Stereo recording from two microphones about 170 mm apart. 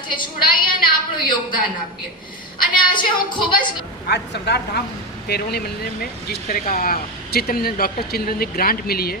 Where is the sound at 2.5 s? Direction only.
25° left (ahead or behind).